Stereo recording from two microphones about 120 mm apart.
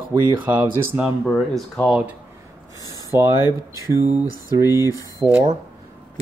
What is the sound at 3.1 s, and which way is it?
Speech, 20° right (ahead or behind).